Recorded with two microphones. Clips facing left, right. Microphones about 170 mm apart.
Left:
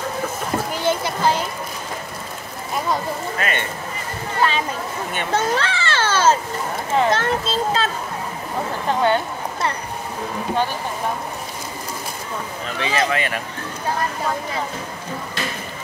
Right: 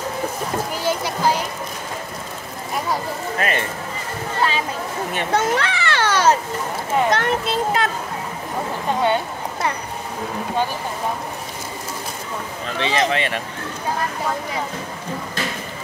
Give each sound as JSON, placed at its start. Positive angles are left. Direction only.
{"t": 0.8, "sound": "music", "side_deg": -10}
{"t": 3.3, "sound": "speech", "side_deg": -35}
{"t": 5.3, "sound": "a child's voice", "side_deg": -15}
{"t": 9.0, "sound": "speech", "side_deg": -15}
{"t": 12.7, "sound": "speech", "side_deg": -30}